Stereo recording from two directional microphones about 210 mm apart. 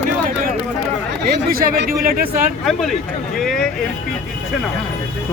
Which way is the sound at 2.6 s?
Centre (ahead or behind).